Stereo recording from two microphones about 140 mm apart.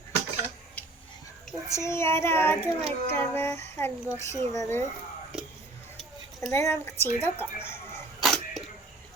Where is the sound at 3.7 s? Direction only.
20° left (ahead or behind).